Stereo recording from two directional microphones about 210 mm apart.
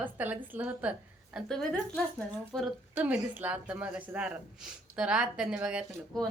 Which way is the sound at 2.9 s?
10° right (ahead or behind).